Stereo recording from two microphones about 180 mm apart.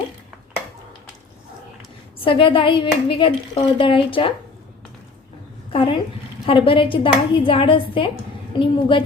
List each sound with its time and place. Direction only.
2.2 s a woman's voice: 30° left (ahead or behind)
5.7 s a woman's voice: 30° left (ahead or behind)